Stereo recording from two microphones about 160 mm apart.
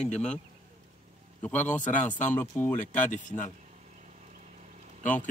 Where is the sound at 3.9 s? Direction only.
45° right (ahead or behind).